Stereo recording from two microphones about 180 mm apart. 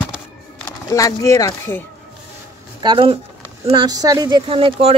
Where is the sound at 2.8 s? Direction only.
30° right (ahead or behind).